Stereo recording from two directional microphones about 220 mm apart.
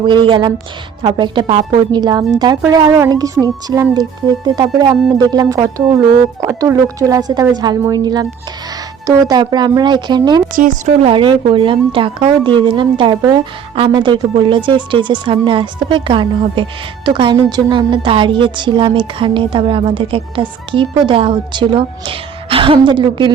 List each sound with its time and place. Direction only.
0.0 s a woman's voice: 20° right (ahead or behind)
10.5 s a woman's voice: 35° right (ahead or behind); by 23.3 s 20° right (ahead or behind)